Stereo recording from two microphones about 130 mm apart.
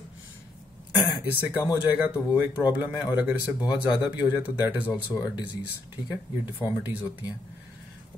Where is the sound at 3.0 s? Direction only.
30° left (ahead or behind).